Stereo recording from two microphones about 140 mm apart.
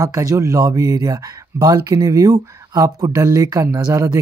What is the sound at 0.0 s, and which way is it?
Speech, 20° right (ahead or behind).